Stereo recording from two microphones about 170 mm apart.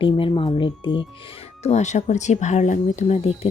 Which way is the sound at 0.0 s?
30° left (ahead or behind).